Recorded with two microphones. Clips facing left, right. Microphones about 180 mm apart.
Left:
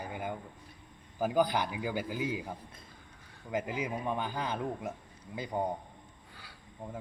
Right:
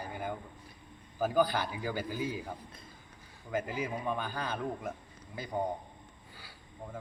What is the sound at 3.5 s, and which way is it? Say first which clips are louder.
Speech: even; 15° left (ahead or behind).